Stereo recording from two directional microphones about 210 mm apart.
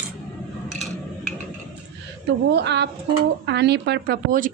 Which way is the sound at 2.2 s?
50° right (ahead or behind).